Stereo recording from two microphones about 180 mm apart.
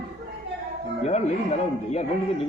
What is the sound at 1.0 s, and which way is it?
Speech, 40° left (ahead or behind).